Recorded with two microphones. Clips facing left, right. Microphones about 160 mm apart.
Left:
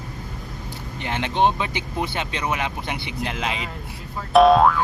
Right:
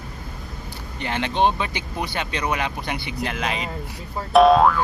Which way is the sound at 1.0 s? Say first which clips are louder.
Even; 20° left (ahead or behind).